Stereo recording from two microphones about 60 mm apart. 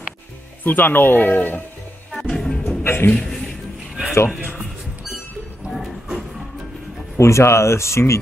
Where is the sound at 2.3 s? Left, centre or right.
Centre.